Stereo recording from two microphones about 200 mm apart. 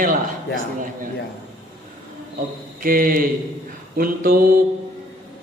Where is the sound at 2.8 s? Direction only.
45° right (ahead or behind).